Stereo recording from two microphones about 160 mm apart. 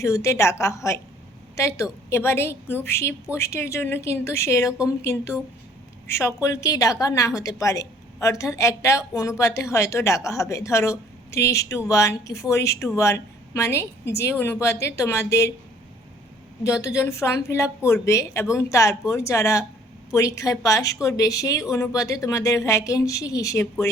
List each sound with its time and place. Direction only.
0.0 s a woman's voice: 20° left (ahead or behind)
16.6 s a woman's voice: 20° left (ahead or behind)